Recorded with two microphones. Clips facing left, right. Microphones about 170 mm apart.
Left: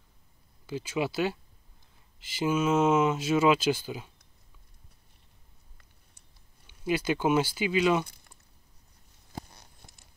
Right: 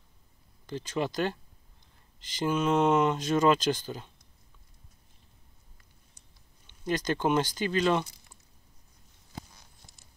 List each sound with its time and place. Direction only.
0.7 s speech: 10° left (ahead or behind)
6.7 s speech: 10° left (ahead or behind)
9.5 s a sound: 60° left (ahead or behind)